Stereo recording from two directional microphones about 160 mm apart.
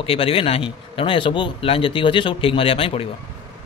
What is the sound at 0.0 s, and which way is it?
A man's voice, 35° left (ahead or behind).